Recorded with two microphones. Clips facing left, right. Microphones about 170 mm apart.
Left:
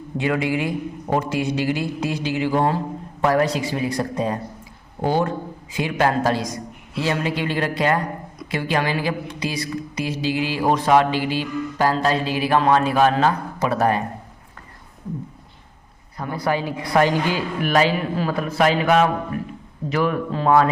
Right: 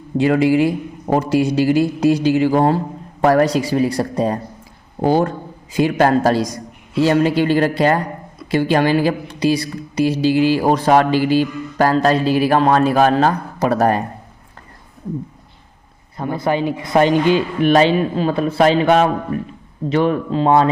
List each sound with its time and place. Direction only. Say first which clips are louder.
0.2 s speech: right 8 dB; 35° right (ahead or behind)
16.1 s a woman's voice: right 4 dB; 25° right (ahead or behind)